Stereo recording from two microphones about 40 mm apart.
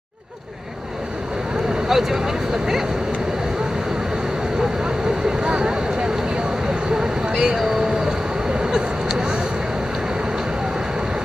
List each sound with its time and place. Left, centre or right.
1.9 s speech: centre
5.4 s vehicle: right
7.2 s a sound: right